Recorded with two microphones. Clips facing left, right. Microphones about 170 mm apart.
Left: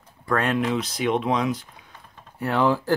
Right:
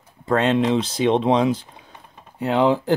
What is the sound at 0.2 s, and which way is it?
Speech, 25° right (ahead or behind).